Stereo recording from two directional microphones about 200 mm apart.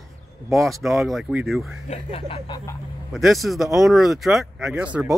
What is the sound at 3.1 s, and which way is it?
Speech, centre (ahead or behind).